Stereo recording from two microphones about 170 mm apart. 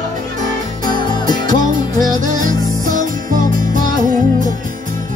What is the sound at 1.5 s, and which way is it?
Music, 50° right (ahead or behind).